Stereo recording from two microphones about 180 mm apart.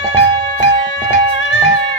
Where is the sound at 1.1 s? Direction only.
90° left.